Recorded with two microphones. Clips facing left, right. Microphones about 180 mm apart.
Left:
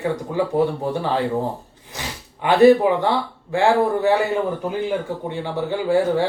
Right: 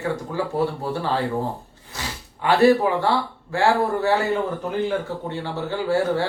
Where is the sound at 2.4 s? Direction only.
20° left (ahead or behind).